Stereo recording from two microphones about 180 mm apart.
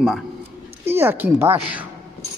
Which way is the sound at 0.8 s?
15° right (ahead or behind).